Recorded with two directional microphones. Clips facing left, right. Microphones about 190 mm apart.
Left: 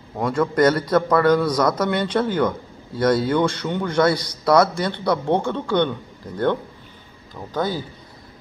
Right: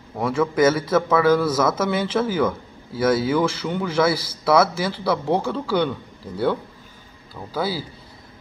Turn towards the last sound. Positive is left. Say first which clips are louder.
# left 1 dB
turn(degrees=-10)  # may be behind; listen again after turning